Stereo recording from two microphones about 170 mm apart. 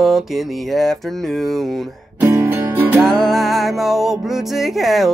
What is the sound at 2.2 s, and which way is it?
Music, 15° right (ahead or behind).